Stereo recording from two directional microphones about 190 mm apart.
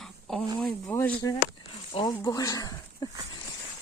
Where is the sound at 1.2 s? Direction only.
20° left (ahead or behind).